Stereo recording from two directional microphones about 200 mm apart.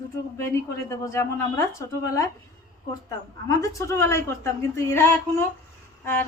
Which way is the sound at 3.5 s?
15° left (ahead or behind).